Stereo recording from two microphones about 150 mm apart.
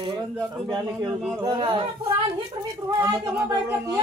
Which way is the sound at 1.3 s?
30° right (ahead or behind).